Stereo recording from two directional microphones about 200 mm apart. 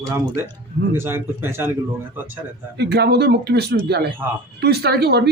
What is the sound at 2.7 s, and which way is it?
Speech, 55° right (ahead or behind).